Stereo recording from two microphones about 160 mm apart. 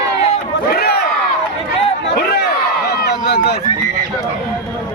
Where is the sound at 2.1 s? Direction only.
80° left.